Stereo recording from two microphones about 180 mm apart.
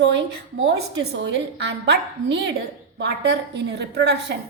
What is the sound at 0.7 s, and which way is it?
A woman's voice, 65° right (ahead or behind).